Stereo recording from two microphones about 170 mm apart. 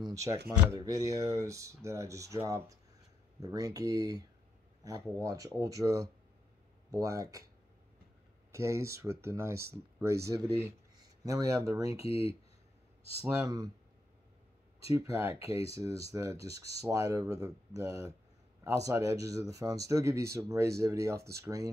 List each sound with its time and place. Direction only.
0.0 s speech: 20° right (ahead or behind)
8.5 s speech: 15° right (ahead or behind)
11.2 s speech: 20° right (ahead or behind)
12.0 s speech: 35° left (ahead or behind)
13.2 s speech: 20° right (ahead or behind)
15.0 s speech: 15° right (ahead or behind)
15.3 s speech: 35° left (ahead or behind)
16.1 s speech: 20° right (ahead or behind)